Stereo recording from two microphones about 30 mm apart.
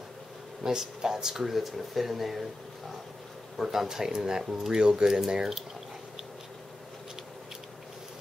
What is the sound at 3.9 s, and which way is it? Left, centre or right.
Speech, centre.